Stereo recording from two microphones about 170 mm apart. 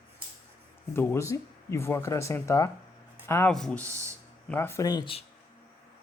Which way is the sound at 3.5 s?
5° left (ahead or behind).